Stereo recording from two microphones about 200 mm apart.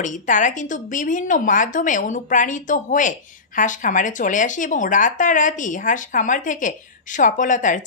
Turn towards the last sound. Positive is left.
turn(degrees=40)  # may be behind; listen again after turning